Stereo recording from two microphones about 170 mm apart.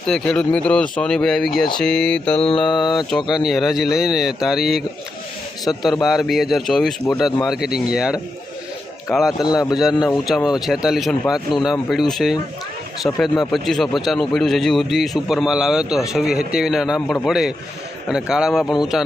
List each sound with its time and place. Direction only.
0.0 s a man's voice: 5° left (ahead or behind)
2.4 s mantra: 30° left (ahead or behind)
3.1 s a man's voice: centre (ahead or behind)
9.4 s mantra: 25° left (ahead or behind)
9.7 s a man's voice: centre (ahead or behind)